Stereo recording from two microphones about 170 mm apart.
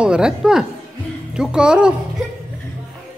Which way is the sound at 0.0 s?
5° right (ahead or behind).